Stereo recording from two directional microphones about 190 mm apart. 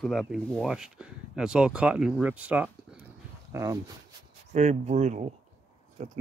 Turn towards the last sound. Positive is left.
turn(degrees=-40)  # may be behind; listen again after turning